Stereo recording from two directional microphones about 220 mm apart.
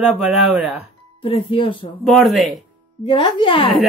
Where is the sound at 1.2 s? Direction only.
25° left (ahead or behind).